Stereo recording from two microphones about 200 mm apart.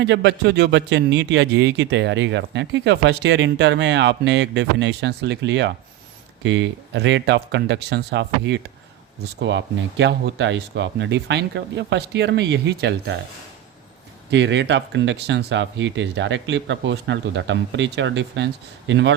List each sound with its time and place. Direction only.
0.0 s a man's voice: 60° right (ahead or behind)
14.3 s a man's voice: 65° right (ahead or behind)